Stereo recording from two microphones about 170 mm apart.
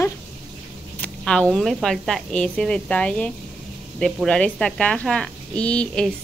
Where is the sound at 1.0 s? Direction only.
5° left (ahead or behind).